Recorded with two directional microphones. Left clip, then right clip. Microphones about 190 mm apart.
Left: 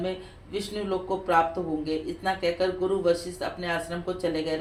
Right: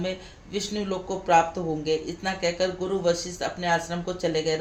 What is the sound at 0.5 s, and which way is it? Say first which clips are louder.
Speech: even; 45° right (ahead or behind).